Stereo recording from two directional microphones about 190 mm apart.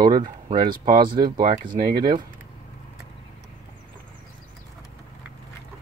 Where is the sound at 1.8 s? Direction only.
50° right (ahead or behind).